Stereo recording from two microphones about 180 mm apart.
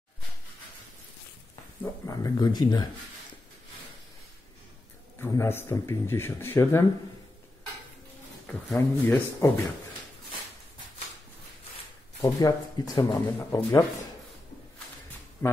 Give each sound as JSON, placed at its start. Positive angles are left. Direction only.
{"t": 1.8, "sound": "speech", "side_deg": 20}
{"t": 5.2, "sound": "speech", "side_deg": 15}
{"t": 8.6, "sound": "speech", "side_deg": 10}
{"t": 12.2, "sound": "speech", "side_deg": 20}
{"t": 15.4, "sound": "speech", "side_deg": 10}